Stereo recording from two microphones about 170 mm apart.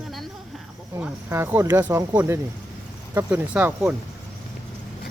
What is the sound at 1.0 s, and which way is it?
Speech, 15° right (ahead or behind).